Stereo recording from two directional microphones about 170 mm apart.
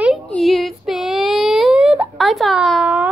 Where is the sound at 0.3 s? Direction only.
Centre (ahead or behind).